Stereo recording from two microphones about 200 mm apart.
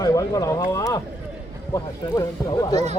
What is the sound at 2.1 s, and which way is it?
Speech, 20° left (ahead or behind).